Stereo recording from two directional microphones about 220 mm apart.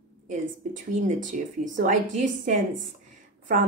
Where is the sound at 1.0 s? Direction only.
35° right (ahead or behind).